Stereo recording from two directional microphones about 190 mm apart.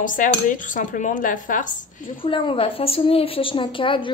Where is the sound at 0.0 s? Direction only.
45° left (ahead or behind).